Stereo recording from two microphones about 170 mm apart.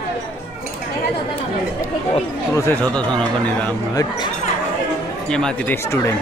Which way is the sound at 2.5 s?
15° left (ahead or behind).